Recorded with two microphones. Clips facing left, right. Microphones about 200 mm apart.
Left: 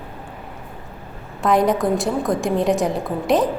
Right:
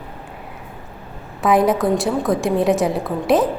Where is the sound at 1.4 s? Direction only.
5° right (ahead or behind).